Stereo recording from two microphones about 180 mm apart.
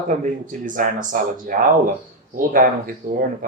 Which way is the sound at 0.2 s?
45° right (ahead or behind).